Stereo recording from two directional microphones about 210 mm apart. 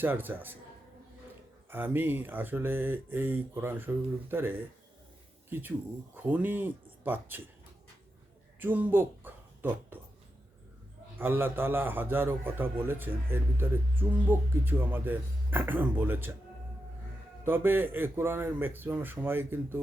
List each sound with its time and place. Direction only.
0.0 s a man's voice: 10° right (ahead or behind)
1.7 s a man's voice: 10° right (ahead or behind)
8.5 s speech: 10° right (ahead or behind)
11.2 s a man's voice: 10° right (ahead or behind)
17.4 s a man's voice: 10° right (ahead or behind)